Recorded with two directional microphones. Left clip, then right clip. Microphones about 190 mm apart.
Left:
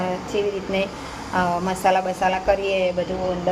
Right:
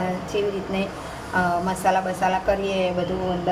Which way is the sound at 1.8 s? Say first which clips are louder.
Left 3 dB; 25° left (ahead or behind).